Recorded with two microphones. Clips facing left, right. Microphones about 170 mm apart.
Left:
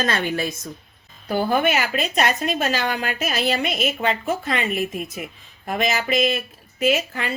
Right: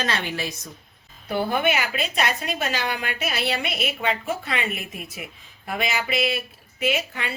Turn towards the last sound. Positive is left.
turn(degrees=40)  # may be behind; listen again after turning